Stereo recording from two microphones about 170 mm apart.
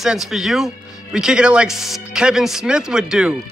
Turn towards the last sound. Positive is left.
turn(degrees=-5)  # may be behind; listen again after turning